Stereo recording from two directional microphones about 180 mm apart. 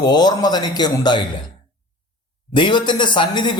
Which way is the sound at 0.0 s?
25° left (ahead or behind).